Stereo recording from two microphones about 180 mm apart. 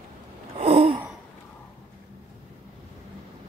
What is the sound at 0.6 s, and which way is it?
Gasp, 30° right (ahead or behind).